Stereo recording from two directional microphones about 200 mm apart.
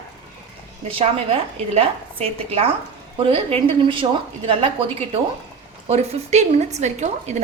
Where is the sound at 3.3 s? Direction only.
30° right (ahead or behind).